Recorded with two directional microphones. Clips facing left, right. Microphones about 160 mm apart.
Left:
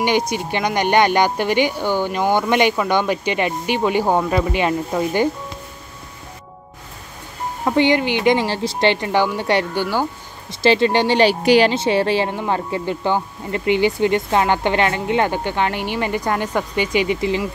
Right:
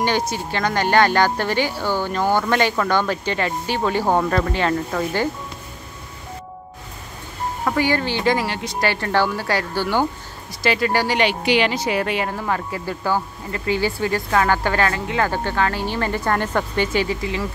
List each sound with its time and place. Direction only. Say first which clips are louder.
0.3 s speech: left 2 dB; 15° left (ahead or behind)
7.6 s speech: left 4 dB; 20° left (ahead or behind)